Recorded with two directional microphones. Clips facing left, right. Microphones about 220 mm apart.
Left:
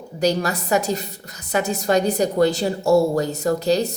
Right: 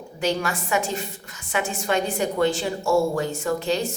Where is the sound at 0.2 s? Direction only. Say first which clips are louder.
Left 4 dB; 40° left (ahead or behind).